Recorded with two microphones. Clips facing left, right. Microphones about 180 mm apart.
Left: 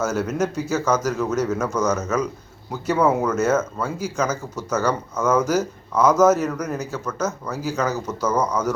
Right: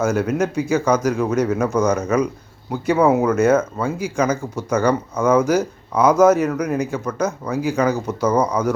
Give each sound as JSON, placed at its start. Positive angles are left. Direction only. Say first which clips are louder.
{"t": 0.0, "sound": "speech", "louder": "right 3 dB", "side_deg": -10}